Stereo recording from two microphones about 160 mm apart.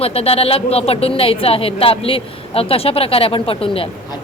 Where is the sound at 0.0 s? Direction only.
40° left (ahead or behind).